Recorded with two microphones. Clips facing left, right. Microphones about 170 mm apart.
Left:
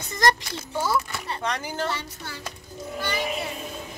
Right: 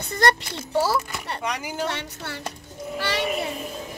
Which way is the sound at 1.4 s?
10° right (ahead or behind).